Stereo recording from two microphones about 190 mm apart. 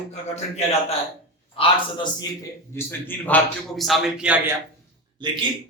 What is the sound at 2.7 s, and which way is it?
A man's voice, 10° left (ahead or behind).